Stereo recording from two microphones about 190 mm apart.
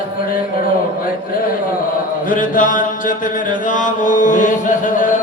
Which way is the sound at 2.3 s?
45° left (ahead or behind).